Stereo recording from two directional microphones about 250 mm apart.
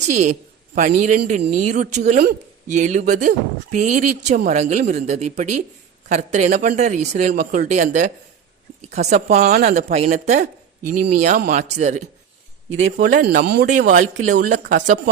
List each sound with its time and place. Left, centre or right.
0.1 s a woman's voice: right